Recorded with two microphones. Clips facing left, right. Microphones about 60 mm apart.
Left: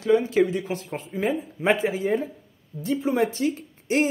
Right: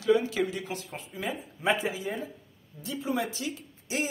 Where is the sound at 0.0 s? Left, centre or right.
Left.